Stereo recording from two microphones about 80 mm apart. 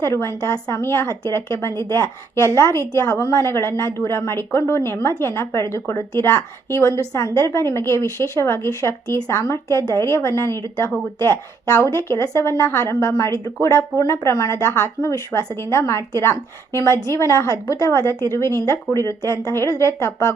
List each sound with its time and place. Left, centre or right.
0.0 s a woman's voice: left